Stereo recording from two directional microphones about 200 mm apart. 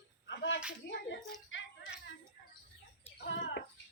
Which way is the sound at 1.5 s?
70° left (ahead or behind).